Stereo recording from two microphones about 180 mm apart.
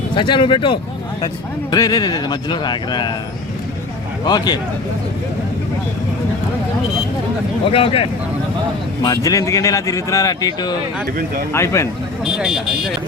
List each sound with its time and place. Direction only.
0.2 s speech: 30° left (ahead or behind)
4.3 s speech: 25° left (ahead or behind)
7.7 s speech: 30° left (ahead or behind)
9.0 s speech: 20° left (ahead or behind)
12.2 s speech: 5° right (ahead or behind)